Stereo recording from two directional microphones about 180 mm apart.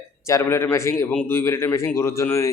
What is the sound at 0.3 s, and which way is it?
A man's voice, 15° left (ahead or behind).